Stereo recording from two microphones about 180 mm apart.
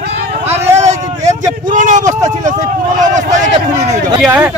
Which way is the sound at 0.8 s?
40° right (ahead or behind).